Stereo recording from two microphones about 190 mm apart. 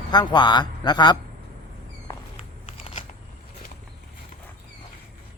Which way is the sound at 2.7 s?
25° left (ahead or behind).